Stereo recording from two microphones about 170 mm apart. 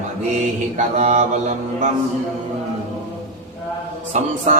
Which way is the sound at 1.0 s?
40° right (ahead or behind).